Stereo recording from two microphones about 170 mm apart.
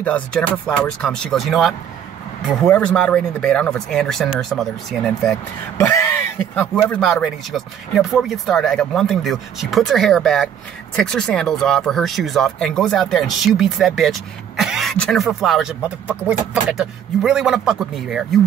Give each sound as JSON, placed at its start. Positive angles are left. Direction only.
{"t": 0.0, "sound": "speech", "side_deg": 5}
{"t": 5.8, "sound": "speech", "side_deg": 15}
{"t": 6.5, "sound": "speech", "side_deg": 5}